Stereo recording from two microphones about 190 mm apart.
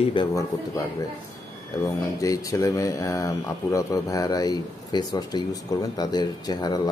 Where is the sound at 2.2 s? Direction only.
15° left (ahead or behind).